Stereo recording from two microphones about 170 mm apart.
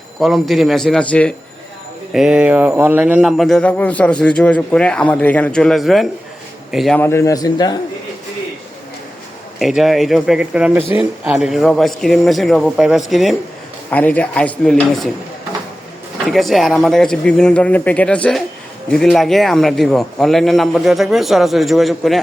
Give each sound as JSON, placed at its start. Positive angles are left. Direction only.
{"t": 0.2, "sound": "speech", "side_deg": 0}
{"t": 2.1, "sound": "speech", "side_deg": -5}
{"t": 7.0, "sound": "speech", "side_deg": 15}
{"t": 9.6, "sound": "a man's voice", "side_deg": 0}
{"t": 16.2, "sound": "speech", "side_deg": 0}